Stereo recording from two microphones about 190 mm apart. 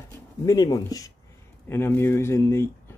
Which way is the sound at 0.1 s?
15° left (ahead or behind).